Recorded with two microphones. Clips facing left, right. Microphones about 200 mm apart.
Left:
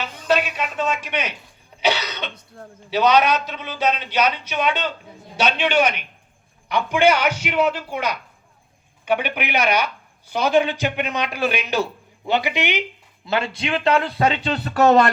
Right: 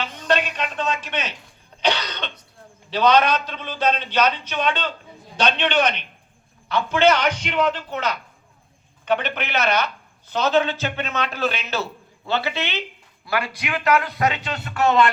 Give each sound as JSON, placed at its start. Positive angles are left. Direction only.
{"t": 0.0, "sound": "a sound", "side_deg": 5}
{"t": 1.8, "sound": "cough", "side_deg": 10}
{"t": 2.9, "sound": "speech", "side_deg": 10}